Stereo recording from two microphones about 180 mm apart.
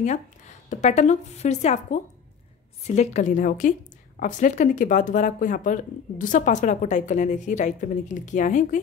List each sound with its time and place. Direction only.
0.0 s a woman's voice: 40° left (ahead or behind)